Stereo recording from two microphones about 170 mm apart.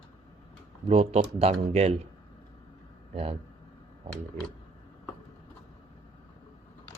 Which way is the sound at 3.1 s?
35° right (ahead or behind).